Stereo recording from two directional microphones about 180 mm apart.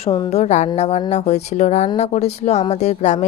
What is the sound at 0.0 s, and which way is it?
A woman's voice, 30° left (ahead or behind).